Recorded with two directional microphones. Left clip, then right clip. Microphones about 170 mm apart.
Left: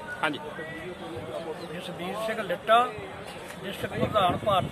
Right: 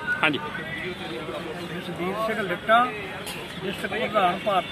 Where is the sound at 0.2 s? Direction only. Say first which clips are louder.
Right 5 dB; 30° right (ahead or behind).